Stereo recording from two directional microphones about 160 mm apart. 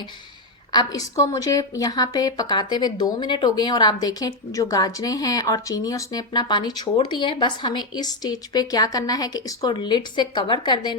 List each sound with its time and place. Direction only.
0.7 s a woman's voice: 25° left (ahead or behind)